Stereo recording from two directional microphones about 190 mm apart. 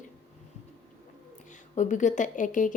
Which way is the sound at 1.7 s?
40° left (ahead or behind).